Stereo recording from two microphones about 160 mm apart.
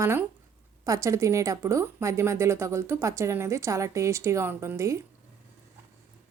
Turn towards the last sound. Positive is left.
turn(degrees=-20)  # may be behind; listen again after turning